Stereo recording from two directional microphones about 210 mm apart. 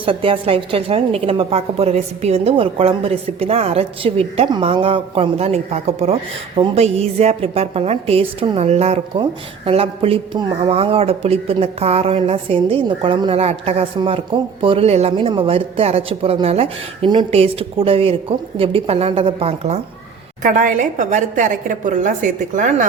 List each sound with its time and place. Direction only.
0.0 s a woman's voice: 25° right (ahead or behind)